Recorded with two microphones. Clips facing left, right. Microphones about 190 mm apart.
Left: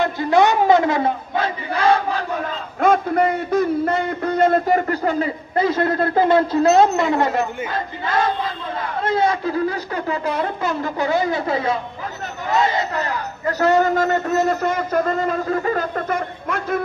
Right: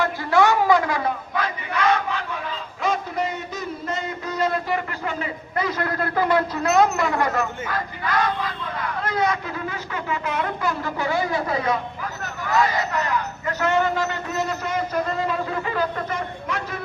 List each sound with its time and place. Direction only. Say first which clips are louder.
0.0 s a man's voice: left 3 dB; 20° left (ahead or behind); by 16.8 s 55° left (ahead or behind)